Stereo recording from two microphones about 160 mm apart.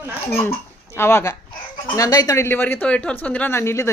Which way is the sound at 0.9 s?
15° left (ahead or behind).